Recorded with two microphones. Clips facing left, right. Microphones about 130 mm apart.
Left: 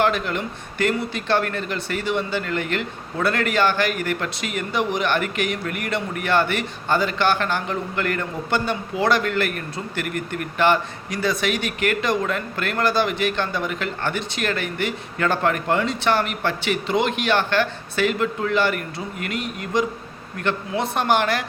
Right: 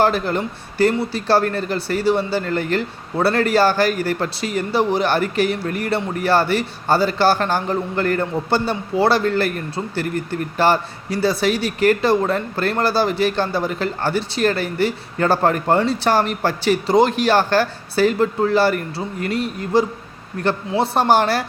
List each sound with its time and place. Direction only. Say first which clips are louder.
0.0 s speech: right 4 dB; 35° right (ahead or behind)